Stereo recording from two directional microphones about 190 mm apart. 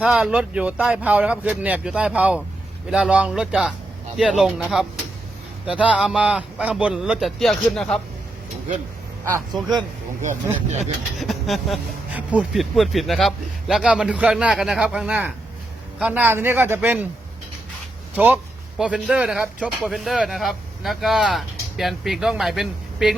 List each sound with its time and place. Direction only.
0.0 s speech: 5° right (ahead or behind)
10.2 s speech: 40° right (ahead or behind)
11.2 s speech: centre (ahead or behind)
18.1 s speech: 10° right (ahead or behind)